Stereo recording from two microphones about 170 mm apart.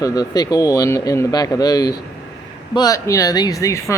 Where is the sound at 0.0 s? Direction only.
20° left (ahead or behind).